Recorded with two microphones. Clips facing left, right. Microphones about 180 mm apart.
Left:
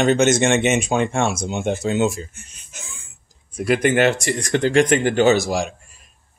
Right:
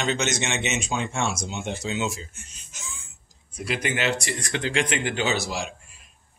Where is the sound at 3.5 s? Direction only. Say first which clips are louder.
Left 11 dB; 50° left (ahead or behind).